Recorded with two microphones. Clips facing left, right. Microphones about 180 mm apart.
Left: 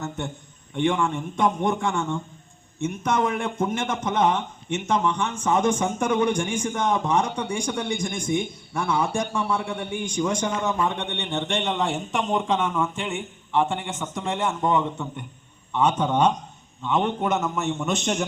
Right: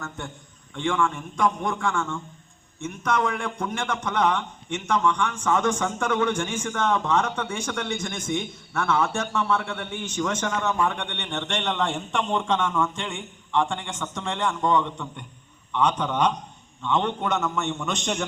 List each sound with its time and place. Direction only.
0.2 s a man's voice: 20° left (ahead or behind)
11.1 s a man's voice: 10° left (ahead or behind)
14.8 s a man's voice: 10° left (ahead or behind)
16.8 s a man's voice: 10° left (ahead or behind)